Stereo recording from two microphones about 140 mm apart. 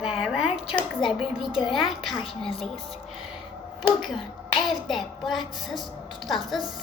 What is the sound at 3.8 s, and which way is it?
A child's voice, centre (ahead or behind).